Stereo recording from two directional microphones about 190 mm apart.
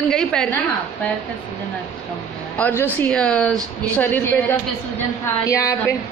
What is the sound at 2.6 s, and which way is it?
A woman's voice, 10° left (ahead or behind).